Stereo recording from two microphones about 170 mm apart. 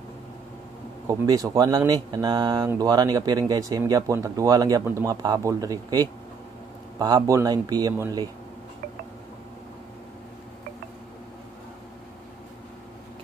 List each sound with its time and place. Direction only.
1.0 s speech: 20° right (ahead or behind)